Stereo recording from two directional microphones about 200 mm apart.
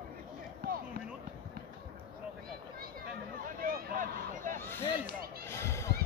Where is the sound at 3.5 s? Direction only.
40° right (ahead or behind).